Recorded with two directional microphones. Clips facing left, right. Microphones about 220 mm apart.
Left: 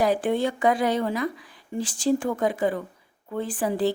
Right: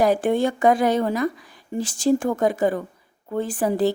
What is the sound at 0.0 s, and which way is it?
Speech, 45° right (ahead or behind).